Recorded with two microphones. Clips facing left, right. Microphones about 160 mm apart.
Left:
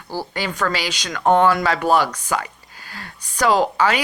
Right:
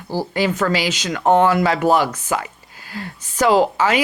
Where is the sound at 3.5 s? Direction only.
10° right (ahead or behind).